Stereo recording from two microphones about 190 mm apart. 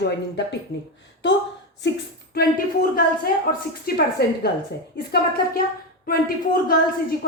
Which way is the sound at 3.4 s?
50° left (ahead or behind).